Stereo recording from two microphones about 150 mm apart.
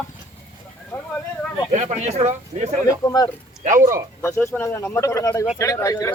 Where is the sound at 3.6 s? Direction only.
60° right (ahead or behind).